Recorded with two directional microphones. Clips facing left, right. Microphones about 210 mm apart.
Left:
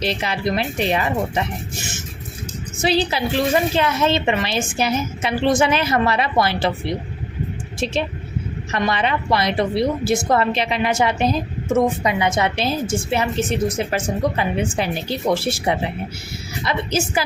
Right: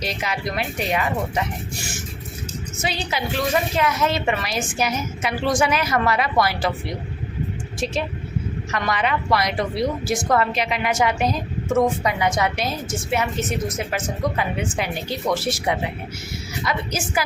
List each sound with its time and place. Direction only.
0.0 s a woman's voice: 30° left (ahead or behind)
2.8 s a woman's voice: 30° left (ahead or behind)
7.8 s a woman's voice: 25° left (ahead or behind)